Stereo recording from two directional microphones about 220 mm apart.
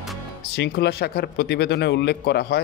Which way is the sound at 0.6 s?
50° left (ahead or behind).